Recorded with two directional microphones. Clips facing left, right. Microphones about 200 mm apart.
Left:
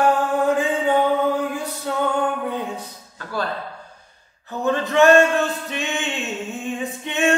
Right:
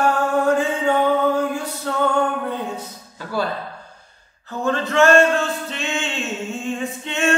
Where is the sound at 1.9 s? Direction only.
10° left (ahead or behind).